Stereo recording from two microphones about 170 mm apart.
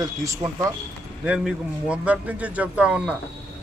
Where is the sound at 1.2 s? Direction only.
5° right (ahead or behind).